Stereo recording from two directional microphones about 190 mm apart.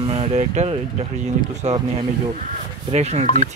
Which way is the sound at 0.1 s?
35° right (ahead or behind).